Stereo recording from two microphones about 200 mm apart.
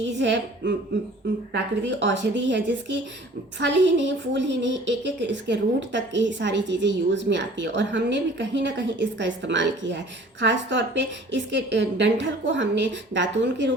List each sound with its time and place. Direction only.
0.2 s a woman's voice: 65° right (ahead or behind)